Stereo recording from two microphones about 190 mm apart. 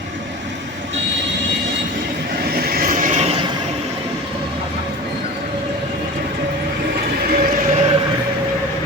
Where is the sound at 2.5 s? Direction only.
45° right (ahead or behind).